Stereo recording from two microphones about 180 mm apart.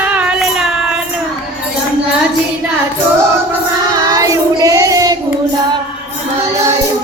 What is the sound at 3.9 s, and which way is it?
Child singing, 20° right (ahead or behind).